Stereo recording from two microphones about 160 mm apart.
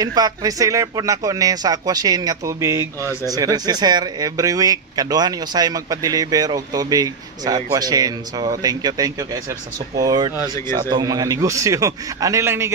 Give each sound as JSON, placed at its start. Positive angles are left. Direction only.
{"t": 0.0, "sound": "speech", "side_deg": -25}